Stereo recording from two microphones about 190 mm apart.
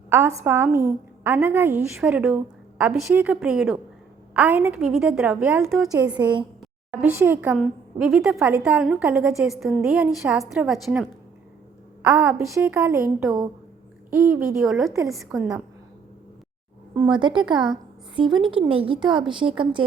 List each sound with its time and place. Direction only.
0.1 s a woman's voice: 15° right (ahead or behind)
7.0 s a woman's voice: 10° right (ahead or behind)
12.0 s a woman's voice: 15° right (ahead or behind)
17.2 s speech: 25° right (ahead or behind)